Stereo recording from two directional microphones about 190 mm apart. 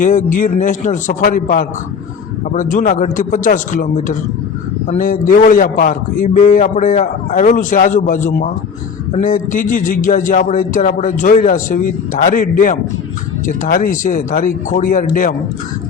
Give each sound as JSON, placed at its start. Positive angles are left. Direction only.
{"t": 0.0, "sound": "a man's voice", "side_deg": 45}